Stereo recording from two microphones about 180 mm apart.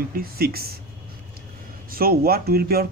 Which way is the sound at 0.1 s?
55° right (ahead or behind).